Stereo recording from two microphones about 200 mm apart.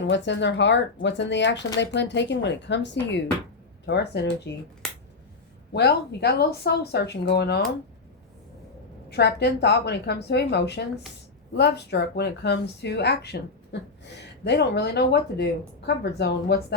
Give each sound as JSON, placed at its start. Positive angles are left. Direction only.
{"t": 0.0, "sound": "speech", "side_deg": 65}
{"t": 4.8, "sound": "finger snapping", "side_deg": 5}
{"t": 5.7, "sound": "speech", "side_deg": 55}
{"t": 9.0, "sound": "speech", "side_deg": 55}